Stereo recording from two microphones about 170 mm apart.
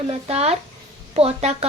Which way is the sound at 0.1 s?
40° right (ahead or behind).